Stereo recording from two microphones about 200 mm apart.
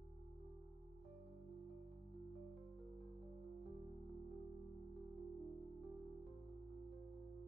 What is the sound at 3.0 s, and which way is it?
Music, 30° right (ahead or behind).